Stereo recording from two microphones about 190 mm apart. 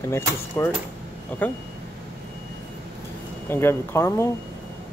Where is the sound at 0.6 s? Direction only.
15° left (ahead or behind).